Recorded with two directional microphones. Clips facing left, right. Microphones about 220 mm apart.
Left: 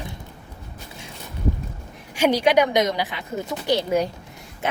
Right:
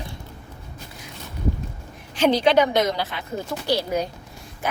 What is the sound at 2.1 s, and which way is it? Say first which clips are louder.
A woman's voice: even; 10° left (ahead or behind).